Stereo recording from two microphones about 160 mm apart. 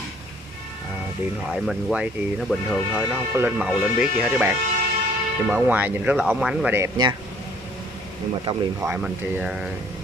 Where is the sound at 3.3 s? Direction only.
5° right (ahead or behind).